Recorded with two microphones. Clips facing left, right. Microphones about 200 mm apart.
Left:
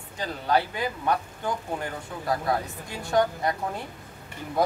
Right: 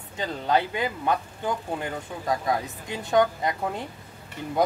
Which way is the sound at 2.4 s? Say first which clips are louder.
Even; 20° right (ahead or behind).